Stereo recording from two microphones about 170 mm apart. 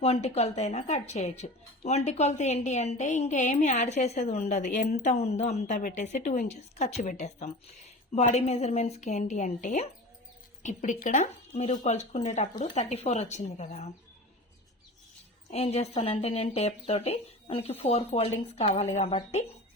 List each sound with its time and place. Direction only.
0.0 s a woman's voice: 35° left (ahead or behind)
15.4 s speech: 35° left (ahead or behind)